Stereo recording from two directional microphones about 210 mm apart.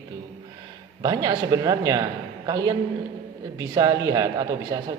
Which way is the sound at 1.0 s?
15° right (ahead or behind).